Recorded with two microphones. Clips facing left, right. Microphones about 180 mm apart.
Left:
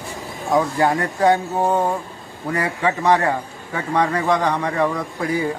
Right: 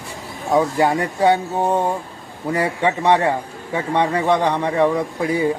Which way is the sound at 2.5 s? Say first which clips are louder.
Right 2 dB; 30° right (ahead or behind).